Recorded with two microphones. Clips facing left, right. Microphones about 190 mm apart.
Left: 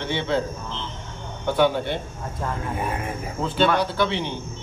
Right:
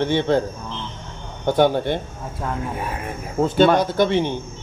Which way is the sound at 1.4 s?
45° right (ahead or behind).